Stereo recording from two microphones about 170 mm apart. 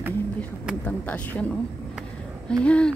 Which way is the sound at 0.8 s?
10° left (ahead or behind).